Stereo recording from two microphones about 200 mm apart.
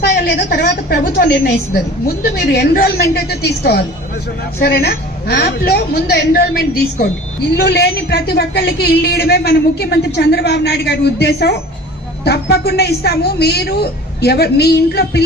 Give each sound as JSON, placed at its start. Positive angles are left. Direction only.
{"t": 0.1, "sound": "a woman's voice", "side_deg": 50}